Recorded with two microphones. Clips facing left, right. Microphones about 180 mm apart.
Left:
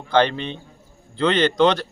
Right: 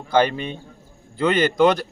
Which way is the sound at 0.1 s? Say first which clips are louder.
Even; 10° right (ahead or behind).